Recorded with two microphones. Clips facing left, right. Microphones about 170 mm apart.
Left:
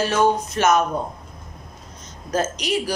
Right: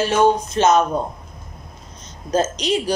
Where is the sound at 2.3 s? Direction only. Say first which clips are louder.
Right 3 dB; 20° right (ahead or behind).